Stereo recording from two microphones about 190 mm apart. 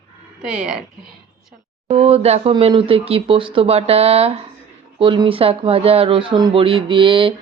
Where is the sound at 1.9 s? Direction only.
30° right (ahead or behind).